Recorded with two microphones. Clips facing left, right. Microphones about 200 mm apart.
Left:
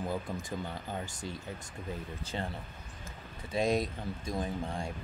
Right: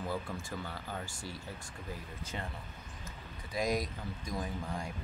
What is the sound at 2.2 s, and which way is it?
Speech, 30° left (ahead or behind).